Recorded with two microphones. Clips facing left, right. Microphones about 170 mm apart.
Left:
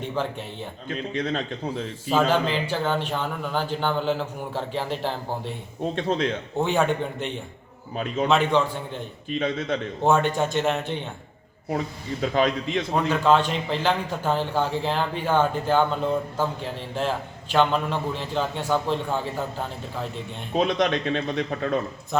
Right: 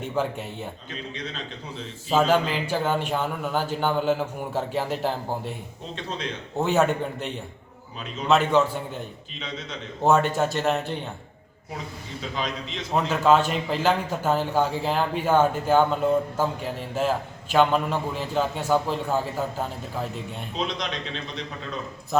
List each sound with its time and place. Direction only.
0.9 s a man's voice: 50° left (ahead or behind)
2.3 s a man's voice: 10° right (ahead or behind)
5.8 s a man's voice: 50° left (ahead or behind)
6.6 s a man's voice: centre (ahead or behind)
7.9 s speech: 55° left (ahead or behind)
8.3 s a man's voice: 5° right (ahead or behind)
9.3 s speech: 55° left (ahead or behind)
10.0 s a man's voice: 5° right (ahead or behind)
12.2 s speech: 55° left (ahead or behind)
13.1 s a man's voice: 5° right (ahead or behind)
20.5 s speech: 55° left (ahead or behind)
22.1 s a man's voice: centre (ahead or behind)